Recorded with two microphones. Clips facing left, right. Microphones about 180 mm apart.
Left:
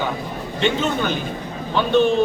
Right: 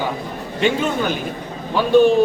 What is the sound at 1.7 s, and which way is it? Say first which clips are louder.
Speech: right 4 dB; 10° right (ahead or behind).